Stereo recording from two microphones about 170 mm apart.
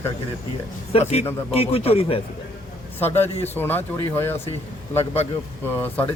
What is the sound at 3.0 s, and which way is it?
Speech, 10° left (ahead or behind).